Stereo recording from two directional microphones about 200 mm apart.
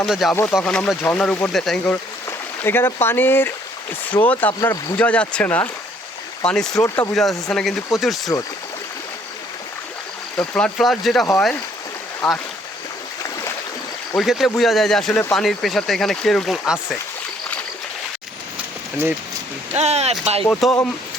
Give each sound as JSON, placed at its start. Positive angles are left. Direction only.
{"t": 0.0, "sound": "speech", "side_deg": 0}
{"t": 6.7, "sound": "speech", "side_deg": 15}
{"t": 7.1, "sound": "speech", "side_deg": 0}
{"t": 10.4, "sound": "speech", "side_deg": 5}
{"t": 14.2, "sound": "speech", "side_deg": 0}
{"t": 19.7, "sound": "speech", "side_deg": -35}
{"t": 20.5, "sound": "speech", "side_deg": 0}